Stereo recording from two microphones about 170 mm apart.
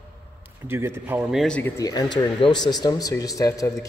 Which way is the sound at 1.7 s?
25° left (ahead or behind).